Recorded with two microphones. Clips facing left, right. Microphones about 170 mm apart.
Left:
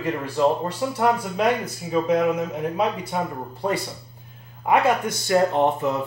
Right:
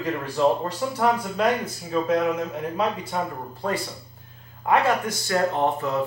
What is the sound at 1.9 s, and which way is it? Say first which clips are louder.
Speech: left 2 dB; 15° left (ahead or behind).